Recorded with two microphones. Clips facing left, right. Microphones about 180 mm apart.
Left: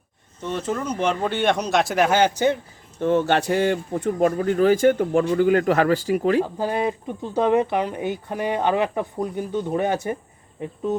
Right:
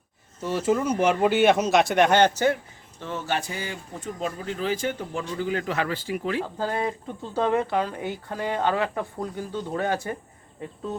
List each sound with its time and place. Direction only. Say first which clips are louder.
0.4 s speech: right 2 dB; 10° right (ahead or behind); by 2.6 s 15° left (ahead or behind)
3.0 s speech: left 10 dB; 55° left (ahead or behind)
6.6 s speech: left 4 dB; 15° left (ahead or behind)